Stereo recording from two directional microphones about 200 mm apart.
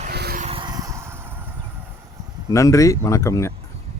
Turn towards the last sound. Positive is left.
turn(degrees=15)  # may be behind; listen again after turning